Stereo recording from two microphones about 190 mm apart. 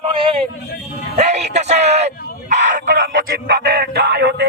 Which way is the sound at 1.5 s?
35° right (ahead or behind).